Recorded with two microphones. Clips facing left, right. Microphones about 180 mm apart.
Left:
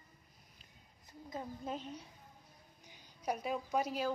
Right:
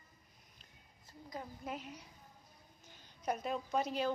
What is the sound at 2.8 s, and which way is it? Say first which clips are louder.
A woman's voice: even; 10° left (ahead or behind).